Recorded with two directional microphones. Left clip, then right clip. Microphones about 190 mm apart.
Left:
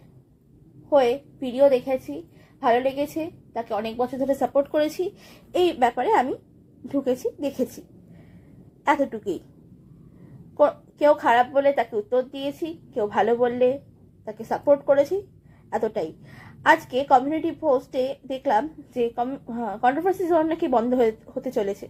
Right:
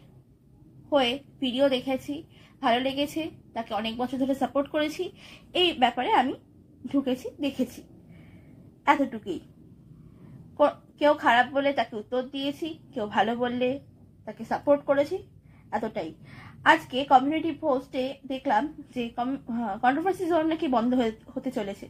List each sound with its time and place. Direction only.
0.9 s a woman's voice: 35° left (ahead or behind)
8.9 s speech: 40° left (ahead or behind)
10.6 s a woman's voice: 40° left (ahead or behind)